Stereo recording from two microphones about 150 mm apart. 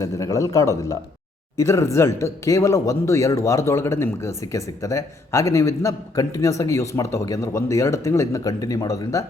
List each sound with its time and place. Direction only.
0.0 s speech: 20° left (ahead or behind)